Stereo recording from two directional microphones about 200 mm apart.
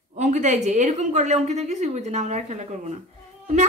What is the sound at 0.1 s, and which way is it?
A woman's voice, 35° right (ahead or behind).